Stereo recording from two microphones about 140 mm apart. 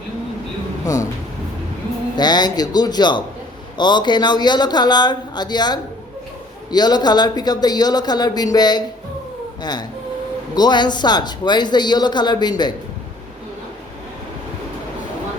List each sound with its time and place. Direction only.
2.1 s a man's voice: 30° left (ahead or behind)
10.5 s a man's voice: 30° left (ahead or behind)